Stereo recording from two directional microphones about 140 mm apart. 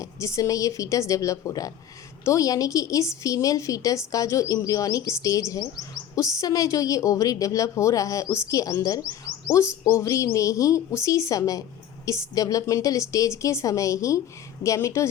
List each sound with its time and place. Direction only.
0.0 s speech: 20° left (ahead or behind)